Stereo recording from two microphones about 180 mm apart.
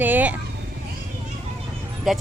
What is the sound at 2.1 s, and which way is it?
Speech, centre (ahead or behind).